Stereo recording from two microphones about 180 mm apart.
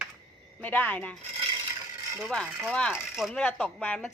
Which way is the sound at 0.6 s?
10° left (ahead or behind).